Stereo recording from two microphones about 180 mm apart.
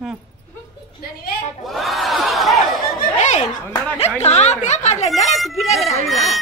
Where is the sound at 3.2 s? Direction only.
40° left (ahead or behind).